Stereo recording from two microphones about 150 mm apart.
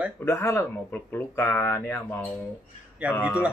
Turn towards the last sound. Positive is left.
turn(degrees=-10)  # may be behind; listen again after turning